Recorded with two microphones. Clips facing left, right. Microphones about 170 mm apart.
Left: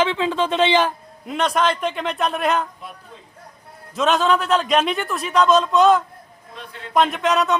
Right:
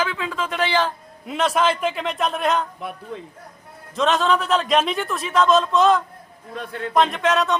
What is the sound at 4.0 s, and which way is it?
A man's voice, centre (ahead or behind).